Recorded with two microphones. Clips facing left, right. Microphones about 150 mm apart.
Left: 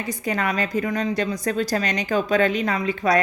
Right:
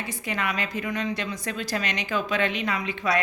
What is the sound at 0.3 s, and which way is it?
A woman's voice, 40° left (ahead or behind).